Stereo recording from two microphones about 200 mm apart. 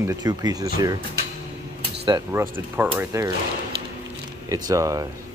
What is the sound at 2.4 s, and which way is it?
Speech, 10° right (ahead or behind).